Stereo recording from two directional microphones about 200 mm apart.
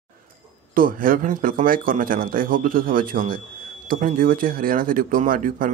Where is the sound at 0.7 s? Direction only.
45° right (ahead or behind).